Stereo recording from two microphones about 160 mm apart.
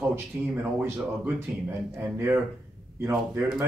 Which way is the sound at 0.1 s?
15° right (ahead or behind).